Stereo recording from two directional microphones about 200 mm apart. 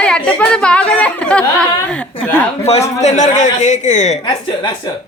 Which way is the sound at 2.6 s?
30° left (ahead or behind).